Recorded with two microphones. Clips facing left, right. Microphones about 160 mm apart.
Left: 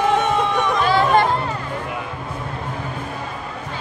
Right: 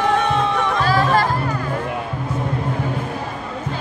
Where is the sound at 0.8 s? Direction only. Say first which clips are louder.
Left 2 dB; 20° left (ahead or behind).